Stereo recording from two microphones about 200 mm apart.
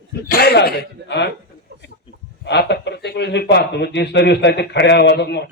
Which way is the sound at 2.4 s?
60° left (ahead or behind).